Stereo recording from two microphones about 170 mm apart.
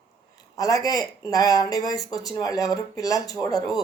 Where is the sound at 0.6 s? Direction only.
20° left (ahead or behind).